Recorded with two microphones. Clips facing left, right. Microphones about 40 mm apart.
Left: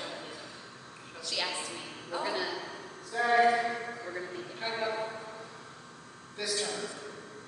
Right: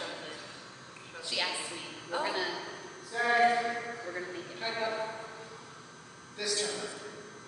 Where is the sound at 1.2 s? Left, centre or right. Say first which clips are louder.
Even; centre.